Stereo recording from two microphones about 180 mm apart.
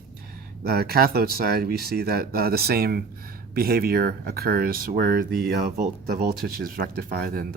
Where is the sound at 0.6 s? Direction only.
60° right (ahead or behind).